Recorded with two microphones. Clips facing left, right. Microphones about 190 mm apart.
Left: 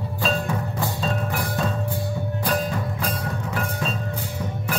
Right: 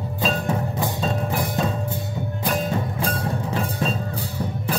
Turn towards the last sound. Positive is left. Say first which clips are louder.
# right 3 dB
turn(degrees=-25)  # may be behind; listen again after turning